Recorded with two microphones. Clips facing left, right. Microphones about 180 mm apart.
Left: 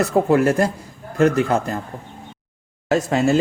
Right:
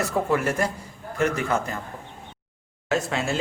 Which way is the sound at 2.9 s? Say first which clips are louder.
Left 8 dB; 45° left (ahead or behind).